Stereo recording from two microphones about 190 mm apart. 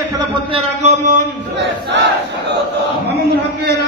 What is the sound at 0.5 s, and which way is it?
Speech, 40° right (ahead or behind).